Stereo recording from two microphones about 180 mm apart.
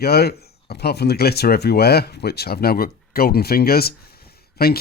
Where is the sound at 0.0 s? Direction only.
60° left (ahead or behind).